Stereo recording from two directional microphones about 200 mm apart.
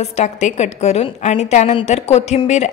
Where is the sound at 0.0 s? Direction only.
35° left (ahead or behind).